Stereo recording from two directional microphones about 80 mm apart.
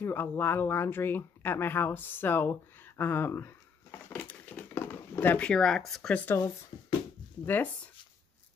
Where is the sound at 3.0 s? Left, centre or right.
Left.